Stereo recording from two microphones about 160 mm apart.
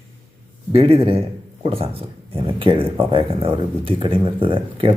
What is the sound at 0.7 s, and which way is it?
Speech, 35° right (ahead or behind).